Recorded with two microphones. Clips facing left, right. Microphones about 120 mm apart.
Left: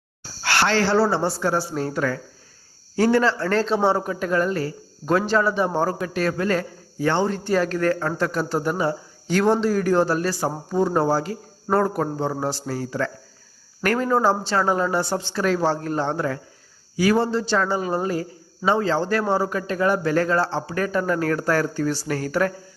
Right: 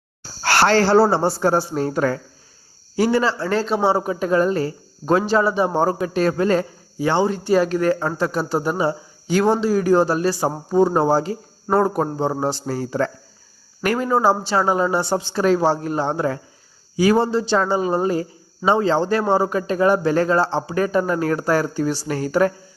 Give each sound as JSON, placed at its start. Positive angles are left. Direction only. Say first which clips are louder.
{"t": 0.4, "sound": "speech", "louder": "right 5 dB", "side_deg": -40}
{"t": 2.9, "sound": "speech", "louder": "even", "side_deg": -10}
{"t": 5.3, "sound": "speech", "louder": "right 2 dB", "side_deg": -15}
{"t": 7.0, "sound": "speech", "louder": "right 2 dB", "side_deg": -10}
{"t": 13.8, "sound": "speech", "louder": "right 2 dB", "side_deg": -10}